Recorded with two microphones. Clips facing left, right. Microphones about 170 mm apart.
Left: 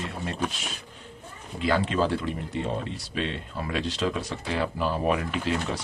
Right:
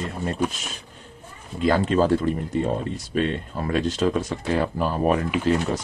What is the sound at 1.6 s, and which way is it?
Speech, 45° right (ahead or behind).